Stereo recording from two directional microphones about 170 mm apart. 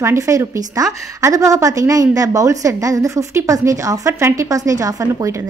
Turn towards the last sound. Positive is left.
turn(degrees=-20)  # may be behind; listen again after turning